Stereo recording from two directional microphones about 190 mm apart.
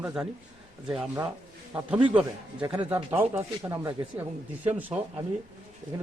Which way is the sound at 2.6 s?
25° right (ahead or behind).